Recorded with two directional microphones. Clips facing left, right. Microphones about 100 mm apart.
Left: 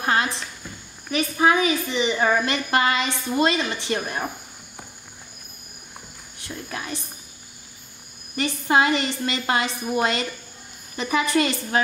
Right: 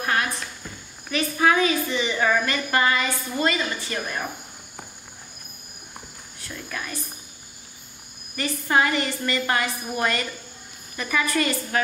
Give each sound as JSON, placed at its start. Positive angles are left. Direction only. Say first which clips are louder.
{"t": 0.0, "sound": "a sound", "louder": "left 2 dB", "side_deg": 25}
{"t": 1.1, "sound": "a woman's voice", "louder": "left 1 dB", "side_deg": 20}
{"t": 6.4, "sound": "a woman's voice", "louder": "left 1 dB", "side_deg": 25}
{"t": 8.4, "sound": "a woman's voice", "louder": "left 2 dB", "side_deg": 20}
{"t": 11.0, "sound": "a woman's voice", "louder": "left 3 dB", "side_deg": 20}